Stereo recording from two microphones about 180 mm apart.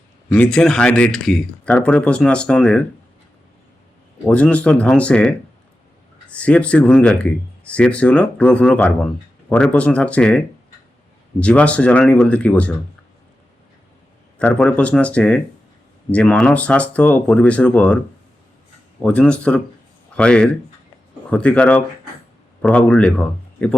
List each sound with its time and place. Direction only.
0.3 s speech: 5° left (ahead or behind)
4.3 s speech: 5° left (ahead or behind)
6.3 s speech: 5° left (ahead or behind)
14.3 s speech: 5° left (ahead or behind)
19.0 s speech: 5° left (ahead or behind)